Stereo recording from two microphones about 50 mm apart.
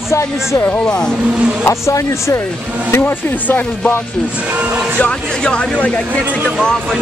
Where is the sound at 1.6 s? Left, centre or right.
Left.